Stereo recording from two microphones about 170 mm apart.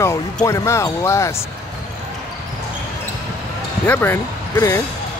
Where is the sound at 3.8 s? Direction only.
15° left (ahead or behind).